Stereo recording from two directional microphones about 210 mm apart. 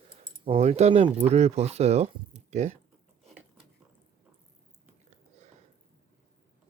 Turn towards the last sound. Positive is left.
turn(degrees=-35)  # may be behind; listen again after turning